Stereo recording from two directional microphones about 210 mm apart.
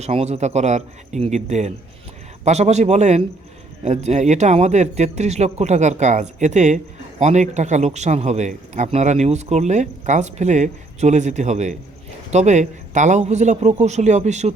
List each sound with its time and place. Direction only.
0.0 s speech: 30° right (ahead or behind)